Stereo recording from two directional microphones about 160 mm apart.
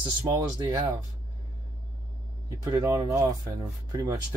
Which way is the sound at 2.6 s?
20° right (ahead or behind).